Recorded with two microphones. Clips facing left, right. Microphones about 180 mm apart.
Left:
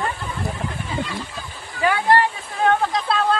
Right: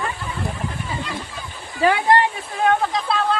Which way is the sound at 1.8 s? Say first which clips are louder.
Right 1 dB; 20° right (ahead or behind).